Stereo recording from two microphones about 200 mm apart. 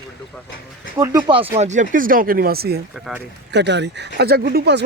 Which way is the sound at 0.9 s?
15° right (ahead or behind).